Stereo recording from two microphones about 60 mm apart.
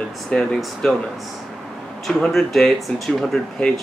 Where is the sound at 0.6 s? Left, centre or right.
Centre.